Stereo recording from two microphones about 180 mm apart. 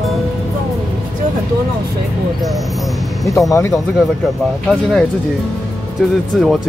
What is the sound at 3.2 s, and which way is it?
Speech, 15° left (ahead or behind).